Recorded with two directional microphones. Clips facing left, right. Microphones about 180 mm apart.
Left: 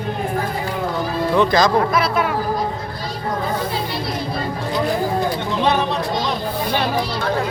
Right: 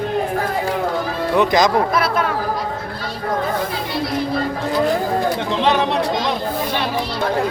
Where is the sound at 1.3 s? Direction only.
20° right (ahead or behind).